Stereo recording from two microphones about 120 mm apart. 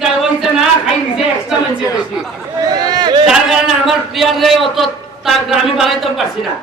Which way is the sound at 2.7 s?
35° right (ahead or behind).